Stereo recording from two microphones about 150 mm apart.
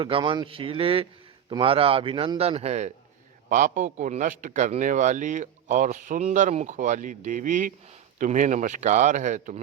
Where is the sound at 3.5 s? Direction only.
60° right (ahead or behind).